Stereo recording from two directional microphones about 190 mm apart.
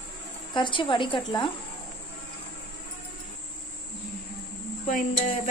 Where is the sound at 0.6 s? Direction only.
25° left (ahead or behind).